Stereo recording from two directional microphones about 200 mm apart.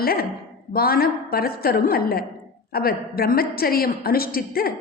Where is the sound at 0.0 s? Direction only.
50° left (ahead or behind).